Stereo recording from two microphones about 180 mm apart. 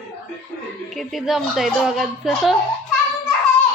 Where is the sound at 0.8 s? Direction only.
Centre (ahead or behind).